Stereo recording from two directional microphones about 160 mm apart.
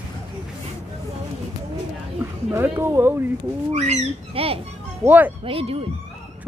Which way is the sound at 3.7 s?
45° right (ahead or behind).